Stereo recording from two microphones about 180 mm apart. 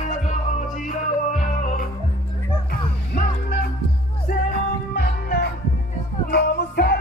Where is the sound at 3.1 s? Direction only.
55° left (ahead or behind).